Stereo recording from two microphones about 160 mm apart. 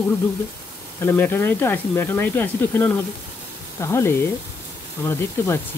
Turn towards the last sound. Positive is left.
turn(degrees=15)  # may be behind; listen again after turning